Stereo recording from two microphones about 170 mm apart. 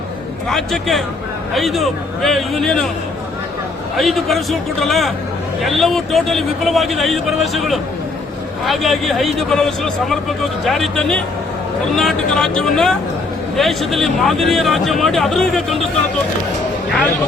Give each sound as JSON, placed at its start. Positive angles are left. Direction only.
{"t": 0.4, "sound": "a man's voice", "side_deg": 0}
{"t": 3.9, "sound": "a man's voice", "side_deg": 0}